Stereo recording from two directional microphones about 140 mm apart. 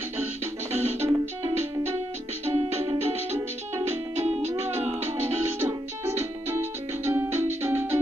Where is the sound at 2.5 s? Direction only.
40° right (ahead or behind).